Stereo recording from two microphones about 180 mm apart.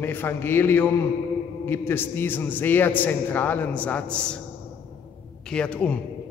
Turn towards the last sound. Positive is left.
turn(degrees=5)  # may be behind; listen again after turning